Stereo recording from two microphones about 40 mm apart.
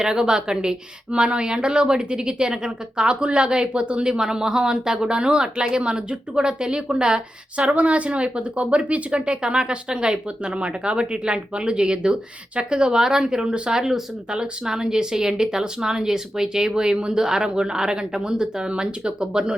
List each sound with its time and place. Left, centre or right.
0.0 s a woman's voice: centre
7.5 s a woman's voice: right